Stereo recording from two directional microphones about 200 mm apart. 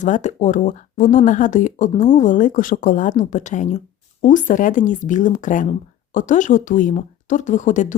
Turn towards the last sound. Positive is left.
turn(degrees=40)  # may be behind; listen again after turning